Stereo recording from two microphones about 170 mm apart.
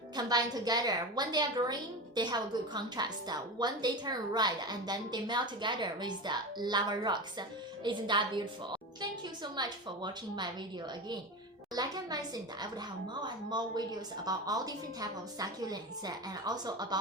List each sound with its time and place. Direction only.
0.2 s a woman's voice: 25° right (ahead or behind)
11.7 s a woman's voice: 25° right (ahead or behind)